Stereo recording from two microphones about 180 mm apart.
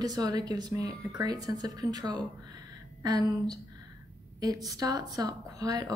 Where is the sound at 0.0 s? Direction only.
20° right (ahead or behind).